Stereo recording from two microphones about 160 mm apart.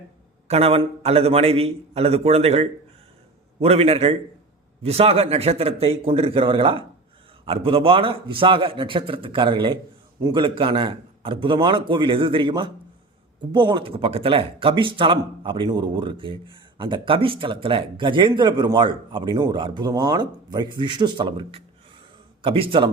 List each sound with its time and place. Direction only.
0.4 s a man's voice: 40° right (ahead or behind)